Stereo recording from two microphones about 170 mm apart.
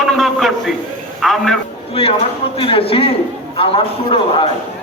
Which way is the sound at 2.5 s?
35° left (ahead or behind).